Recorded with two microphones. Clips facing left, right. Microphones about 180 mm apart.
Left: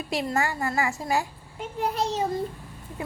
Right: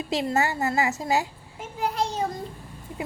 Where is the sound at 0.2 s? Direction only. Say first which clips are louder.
Right 1 dB; 20° right (ahead or behind).